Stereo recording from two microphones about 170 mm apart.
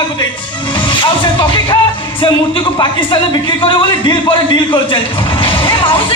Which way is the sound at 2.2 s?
30° left (ahead or behind).